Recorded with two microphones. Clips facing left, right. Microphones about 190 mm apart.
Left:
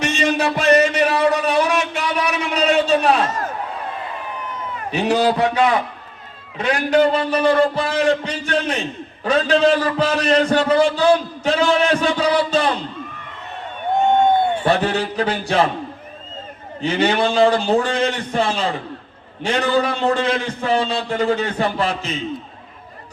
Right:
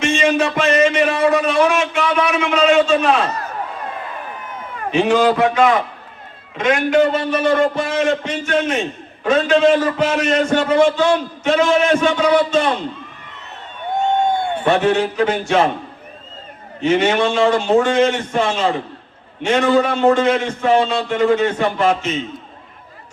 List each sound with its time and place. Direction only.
0.0 s a sound: 35° left (ahead or behind)
4.9 s a man's voice: 40° left (ahead or behind)
14.6 s a man's voice: 35° left (ahead or behind)
16.8 s a man's voice: 35° left (ahead or behind)